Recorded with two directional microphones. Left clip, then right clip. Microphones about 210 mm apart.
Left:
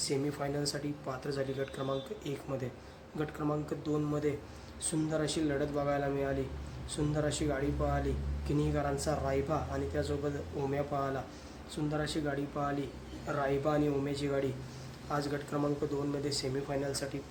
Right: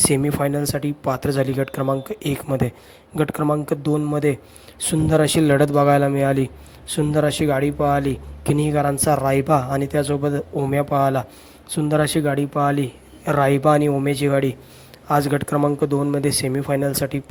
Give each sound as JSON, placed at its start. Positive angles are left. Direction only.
{"t": 0.1, "sound": "speech", "side_deg": -45}